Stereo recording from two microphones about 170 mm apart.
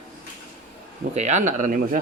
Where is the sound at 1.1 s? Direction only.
45° right (ahead or behind).